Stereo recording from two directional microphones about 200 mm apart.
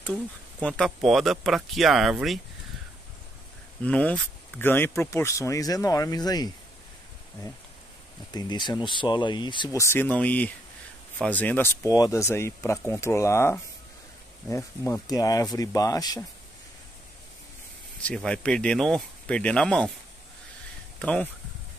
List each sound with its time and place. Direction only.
0.1 s speech: 5° left (ahead or behind)
3.8 s speech: 5° left (ahead or behind)
8.3 s speech: 20° left (ahead or behind)
18.0 s speech: 5° left (ahead or behind)
21.0 s speech: 5° left (ahead or behind)